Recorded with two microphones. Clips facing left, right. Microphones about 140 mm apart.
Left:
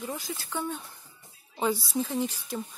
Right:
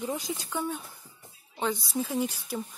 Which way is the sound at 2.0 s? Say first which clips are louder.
Even; 10° right (ahead or behind).